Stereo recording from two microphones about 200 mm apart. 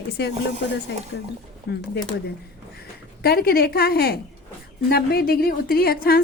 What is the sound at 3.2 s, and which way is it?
A woman's voice, 50° left (ahead or behind).